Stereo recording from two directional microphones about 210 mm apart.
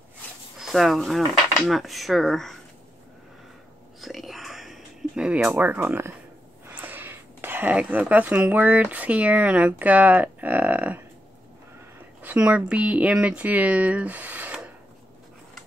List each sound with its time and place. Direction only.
0.6 s speech: centre (ahead or behind)
4.0 s whispering: centre (ahead or behind)
6.7 s speech: 10° right (ahead or behind)
12.2 s speech: 5° right (ahead or behind)